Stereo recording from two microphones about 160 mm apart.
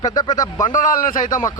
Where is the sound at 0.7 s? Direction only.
55° left (ahead or behind).